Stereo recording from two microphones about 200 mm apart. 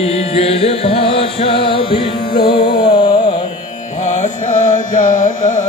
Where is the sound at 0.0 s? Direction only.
30° left (ahead or behind).